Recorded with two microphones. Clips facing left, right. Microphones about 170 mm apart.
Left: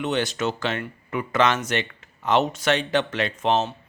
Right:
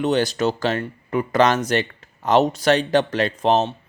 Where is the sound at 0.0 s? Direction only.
35° right (ahead or behind).